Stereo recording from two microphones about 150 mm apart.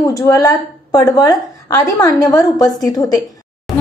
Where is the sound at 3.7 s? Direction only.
Centre (ahead or behind).